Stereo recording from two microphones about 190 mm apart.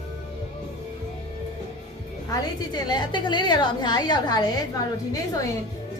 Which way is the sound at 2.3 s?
20° left (ahead or behind).